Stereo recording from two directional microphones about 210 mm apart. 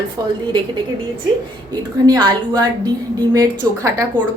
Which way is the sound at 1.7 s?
20° right (ahead or behind).